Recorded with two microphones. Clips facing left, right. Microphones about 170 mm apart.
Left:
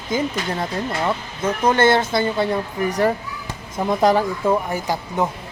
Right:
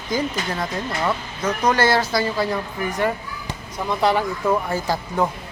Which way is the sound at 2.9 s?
40° left (ahead or behind).